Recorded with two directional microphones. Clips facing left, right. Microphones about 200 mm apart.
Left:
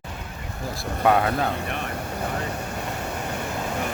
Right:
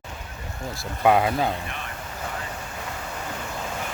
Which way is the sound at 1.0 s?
10° right (ahead or behind).